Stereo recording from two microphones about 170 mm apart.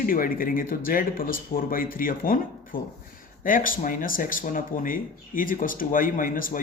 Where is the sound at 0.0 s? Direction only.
55° left (ahead or behind).